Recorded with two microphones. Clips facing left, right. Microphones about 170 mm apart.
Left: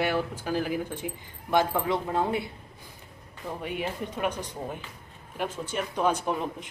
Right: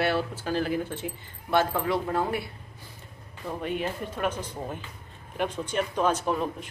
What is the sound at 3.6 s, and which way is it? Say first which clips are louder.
Speech: right 2 dB; 10° left (ahead or behind).